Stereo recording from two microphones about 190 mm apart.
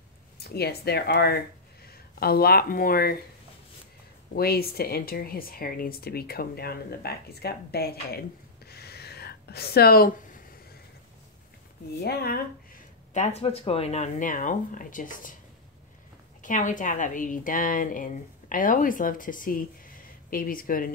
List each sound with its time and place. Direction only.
0.4 s a woman's voice: 55° left (ahead or behind)
4.4 s a woman's voice: 55° left (ahead or behind)
8.6 s a sound: 55° left (ahead or behind)
12.0 s a woman's voice: 55° left (ahead or behind)
16.4 s a woman's voice: 40° left (ahead or behind)